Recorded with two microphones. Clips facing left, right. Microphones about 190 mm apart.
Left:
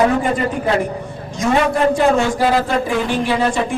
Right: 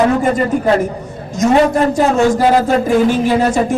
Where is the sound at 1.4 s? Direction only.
45° right (ahead or behind).